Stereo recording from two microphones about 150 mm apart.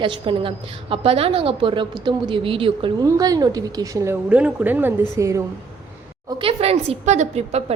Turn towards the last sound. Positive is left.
turn(degrees=-45)  # may be behind; listen again after turning